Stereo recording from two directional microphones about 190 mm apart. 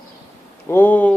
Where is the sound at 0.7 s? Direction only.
10° left (ahead or behind).